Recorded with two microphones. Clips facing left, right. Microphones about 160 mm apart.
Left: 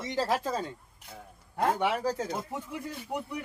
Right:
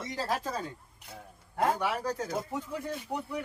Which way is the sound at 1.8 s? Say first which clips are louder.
Left 3 dB; 25° left (ahead or behind).